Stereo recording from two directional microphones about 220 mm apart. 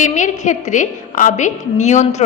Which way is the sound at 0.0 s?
35° left (ahead or behind).